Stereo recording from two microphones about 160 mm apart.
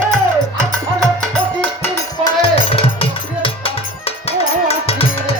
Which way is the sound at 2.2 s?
30° left (ahead or behind).